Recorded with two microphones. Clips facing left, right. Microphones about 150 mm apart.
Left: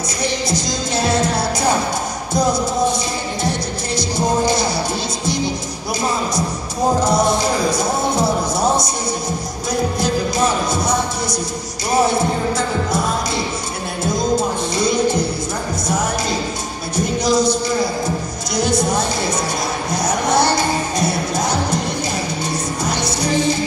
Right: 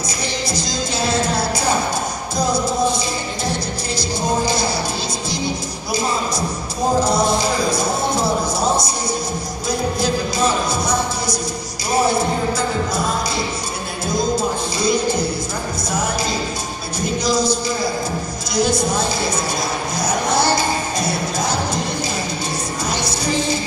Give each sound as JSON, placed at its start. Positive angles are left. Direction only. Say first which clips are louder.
{"t": 17.2, "sound": "music", "louder": "left 2 dB", "side_deg": 20}